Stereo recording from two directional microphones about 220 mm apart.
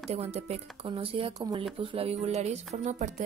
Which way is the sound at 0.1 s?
30° right (ahead or behind).